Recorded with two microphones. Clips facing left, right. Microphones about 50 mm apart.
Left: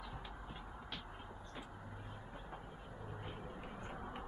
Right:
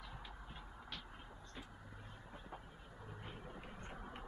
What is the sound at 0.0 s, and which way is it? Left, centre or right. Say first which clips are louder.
Vehicle: left 4 dB; centre.